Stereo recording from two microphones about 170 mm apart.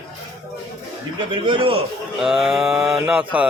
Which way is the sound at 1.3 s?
30° right (ahead or behind).